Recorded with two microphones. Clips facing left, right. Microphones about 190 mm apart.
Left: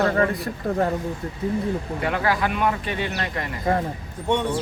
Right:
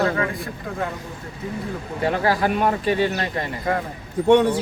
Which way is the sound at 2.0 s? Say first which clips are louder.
Right 4 dB; 35° right (ahead or behind).